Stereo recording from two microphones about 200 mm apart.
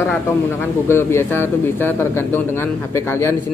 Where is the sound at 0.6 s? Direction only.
10° left (ahead or behind).